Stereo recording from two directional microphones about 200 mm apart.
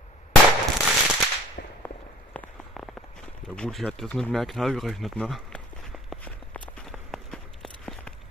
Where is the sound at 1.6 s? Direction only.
50° left (ahead or behind).